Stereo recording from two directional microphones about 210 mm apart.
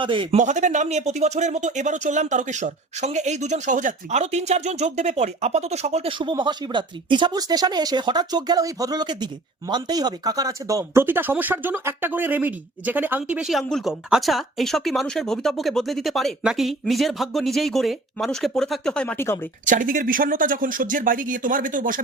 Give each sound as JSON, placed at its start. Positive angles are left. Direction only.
{"t": 0.0, "sound": "speech", "side_deg": -25}
{"t": 19.6, "sound": "speech", "side_deg": -40}